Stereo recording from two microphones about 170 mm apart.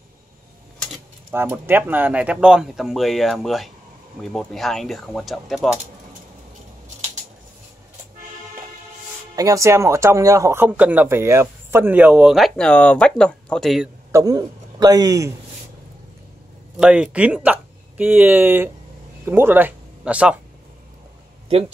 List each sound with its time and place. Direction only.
1.3 s speech: 10° right (ahead or behind)
9.3 s speech: 20° right (ahead or behind); by 13.8 s centre (ahead or behind)
14.1 s a man's voice: 20° right (ahead or behind)
16.8 s speech: 5° right (ahead or behind)